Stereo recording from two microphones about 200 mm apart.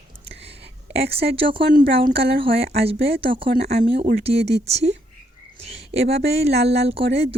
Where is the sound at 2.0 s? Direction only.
50° right (ahead or behind).